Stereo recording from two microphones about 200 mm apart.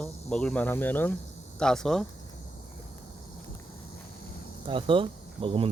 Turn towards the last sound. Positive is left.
turn(degrees=-25)  # may be behind; listen again after turning